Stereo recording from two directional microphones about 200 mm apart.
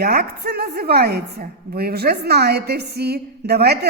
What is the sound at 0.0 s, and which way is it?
A woman's voice, 50° right (ahead or behind).